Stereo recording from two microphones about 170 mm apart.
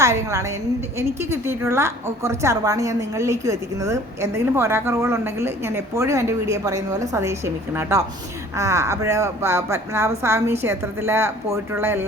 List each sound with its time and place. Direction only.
0.0 s a woman's voice: 15° right (ahead or behind)